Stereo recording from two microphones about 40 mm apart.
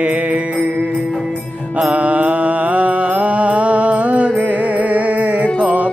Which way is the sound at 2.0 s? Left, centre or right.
Right.